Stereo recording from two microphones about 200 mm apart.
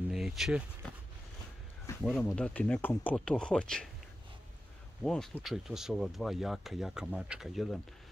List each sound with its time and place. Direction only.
0.1 s a sound: centre (ahead or behind)
2.0 s speech: 5° left (ahead or behind)
5.0 s speech: 5° left (ahead or behind)